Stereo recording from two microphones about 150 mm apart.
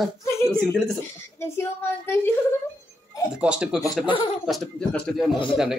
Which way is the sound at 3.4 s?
5° right (ahead or behind).